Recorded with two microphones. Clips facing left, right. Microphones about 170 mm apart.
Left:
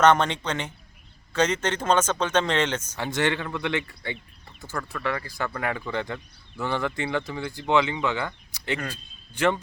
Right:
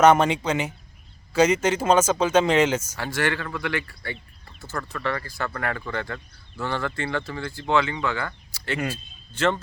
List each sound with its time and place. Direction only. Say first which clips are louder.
0.0 s speech: right 3 dB; 10° right (ahead or behind)
3.0 s speech: left 5 dB; 20° left (ahead or behind)
4.8 s speech: right 1 dB; centre (ahead or behind)
5.0 s speech: even; 15° left (ahead or behind)